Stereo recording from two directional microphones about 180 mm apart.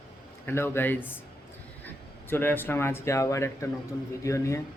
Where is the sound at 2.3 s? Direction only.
10° left (ahead or behind).